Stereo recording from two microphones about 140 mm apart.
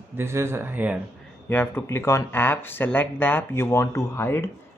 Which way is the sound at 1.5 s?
15° left (ahead or behind).